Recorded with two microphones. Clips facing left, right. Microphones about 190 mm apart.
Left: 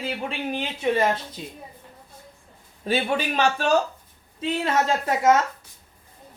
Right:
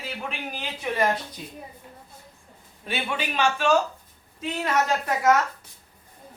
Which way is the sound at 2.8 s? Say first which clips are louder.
Left 6 dB; 40° left (ahead or behind).